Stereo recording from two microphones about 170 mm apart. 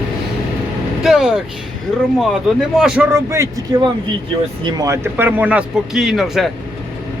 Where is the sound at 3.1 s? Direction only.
15° right (ahead or behind); by 6.5 s centre (ahead or behind).